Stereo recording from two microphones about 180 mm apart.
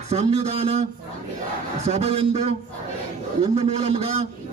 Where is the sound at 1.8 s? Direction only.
35° right (ahead or behind).